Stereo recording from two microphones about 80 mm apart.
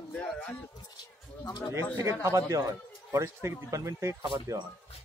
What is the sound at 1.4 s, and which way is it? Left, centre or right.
Speech, left.